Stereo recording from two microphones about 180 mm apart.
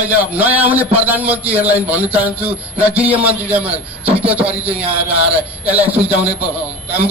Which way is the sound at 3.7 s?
35° right (ahead or behind).